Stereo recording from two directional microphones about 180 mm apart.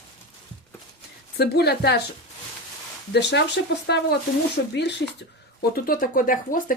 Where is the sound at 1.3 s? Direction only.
65° left (ahead or behind).